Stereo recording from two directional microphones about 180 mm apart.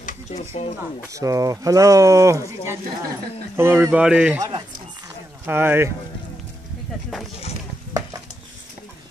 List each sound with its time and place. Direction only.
0.0 s a sound: 40° left (ahead or behind)
1.1 s speech: 20° right (ahead or behind)
4.4 s speech: 25° right (ahead or behind)
5.5 s speech: 10° right (ahead or behind)